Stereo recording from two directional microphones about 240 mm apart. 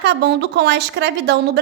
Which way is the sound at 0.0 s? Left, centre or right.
Right.